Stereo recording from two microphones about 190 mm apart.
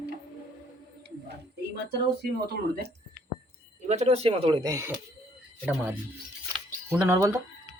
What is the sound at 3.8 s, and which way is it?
Speech, 35° right (ahead or behind).